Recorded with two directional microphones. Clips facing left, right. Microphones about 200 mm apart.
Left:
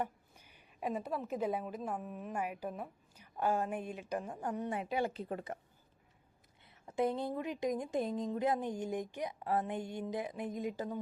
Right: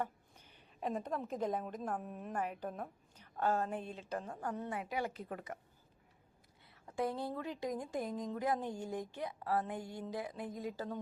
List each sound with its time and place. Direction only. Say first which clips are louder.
0.0 s a woman's voice: left 2 dB; 10° left (ahead or behind); by 5.5 s 30° left (ahead or behind)
6.8 s speech: left 4 dB; 20° left (ahead or behind)